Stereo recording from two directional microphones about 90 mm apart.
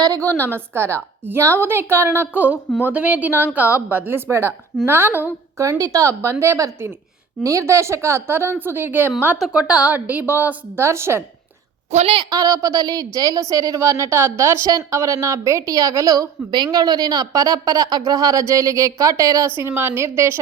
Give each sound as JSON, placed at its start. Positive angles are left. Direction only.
{"t": 0.0, "sound": "a woman's voice", "side_deg": -40}
{"t": 5.5, "sound": "a woman's voice", "side_deg": -35}
{"t": 9.4, "sound": "a woman's voice", "side_deg": -10}
{"t": 12.2, "sound": "speech", "side_deg": -40}
{"t": 19.5, "sound": "a woman's voice", "side_deg": -25}